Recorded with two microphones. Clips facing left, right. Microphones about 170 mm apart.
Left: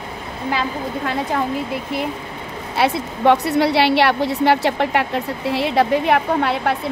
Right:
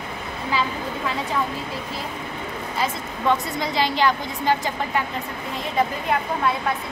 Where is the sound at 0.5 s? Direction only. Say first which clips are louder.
Left 2 dB; 60° left (ahead or behind).